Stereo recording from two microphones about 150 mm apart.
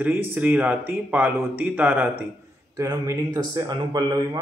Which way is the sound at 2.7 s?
25° right (ahead or behind).